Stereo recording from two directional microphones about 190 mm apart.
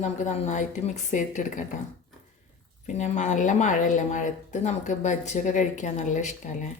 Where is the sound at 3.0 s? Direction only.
40° left (ahead or behind).